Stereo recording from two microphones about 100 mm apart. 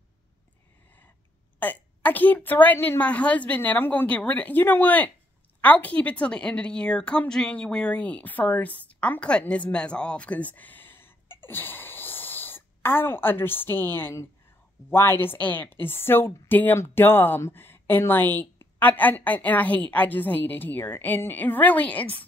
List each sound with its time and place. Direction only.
1.6 s a woman's voice: 15° left (ahead or behind)